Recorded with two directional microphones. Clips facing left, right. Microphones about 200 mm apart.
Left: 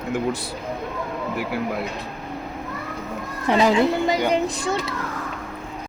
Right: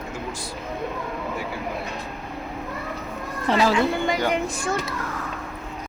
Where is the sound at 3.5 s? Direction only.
20° left (ahead or behind).